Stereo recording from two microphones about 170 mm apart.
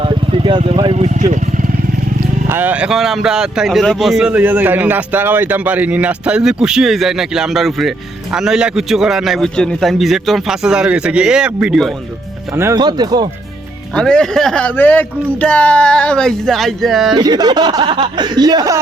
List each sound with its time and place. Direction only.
0.0 s speech: 30° right (ahead or behind)
2.5 s speech: 10° right (ahead or behind)
12.5 s speech: 20° right (ahead or behind)
13.9 s speech: 5° left (ahead or behind)
17.2 s speech: 25° right (ahead or behind)